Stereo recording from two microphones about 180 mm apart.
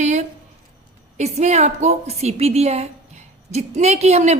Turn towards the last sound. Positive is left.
turn(degrees=-35)  # may be behind; listen again after turning